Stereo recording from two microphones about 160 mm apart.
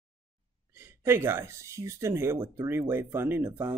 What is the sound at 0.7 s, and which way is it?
A woman's voice, 15° right (ahead or behind).